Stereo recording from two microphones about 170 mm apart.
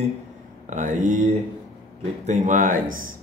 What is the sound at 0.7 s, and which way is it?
Speech, 45° right (ahead or behind).